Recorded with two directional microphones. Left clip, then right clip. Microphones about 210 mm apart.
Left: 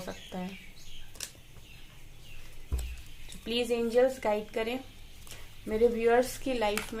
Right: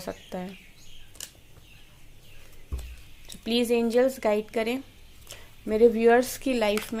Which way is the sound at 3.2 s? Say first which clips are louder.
Right 5 dB; 50° right (ahead or behind).